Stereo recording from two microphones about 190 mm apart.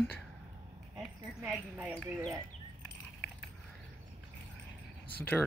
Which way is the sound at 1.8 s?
5° right (ahead or behind).